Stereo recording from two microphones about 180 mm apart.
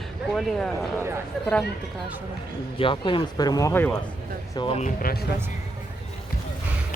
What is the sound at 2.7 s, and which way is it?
Speech, 30° left (ahead or behind).